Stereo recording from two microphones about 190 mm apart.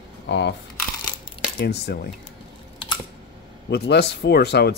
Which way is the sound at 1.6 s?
60° left (ahead or behind).